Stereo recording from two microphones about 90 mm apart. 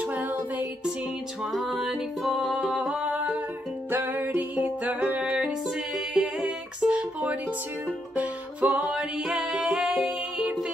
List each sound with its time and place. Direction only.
0.0 s music: 20° right (ahead or behind)
1.5 s music: centre (ahead or behind)
3.9 s music: 20° right (ahead or behind)
8.6 s music: 15° right (ahead or behind)